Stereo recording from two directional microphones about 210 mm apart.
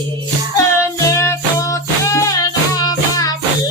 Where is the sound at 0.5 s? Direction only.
15° left (ahead or behind).